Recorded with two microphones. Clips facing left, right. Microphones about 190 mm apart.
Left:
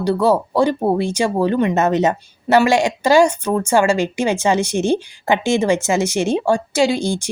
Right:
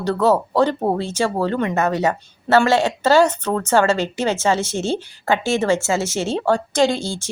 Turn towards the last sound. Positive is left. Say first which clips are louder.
# left 2 dB
turn(degrees=15)  # may be behind; listen again after turning